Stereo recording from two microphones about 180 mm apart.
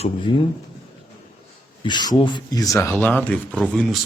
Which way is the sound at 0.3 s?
25° left (ahead or behind).